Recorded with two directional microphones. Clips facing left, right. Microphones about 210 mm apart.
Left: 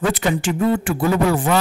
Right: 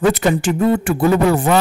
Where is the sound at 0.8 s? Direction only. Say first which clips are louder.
Right 4 dB; 65° right (ahead or behind).